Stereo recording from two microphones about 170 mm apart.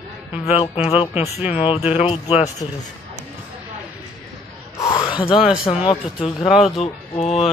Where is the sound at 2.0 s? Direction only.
35° left (ahead or behind).